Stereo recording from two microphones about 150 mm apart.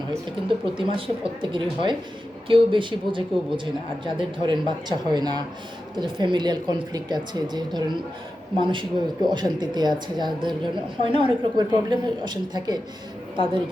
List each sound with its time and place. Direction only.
0.4 s a woman's voice: 35° right (ahead or behind)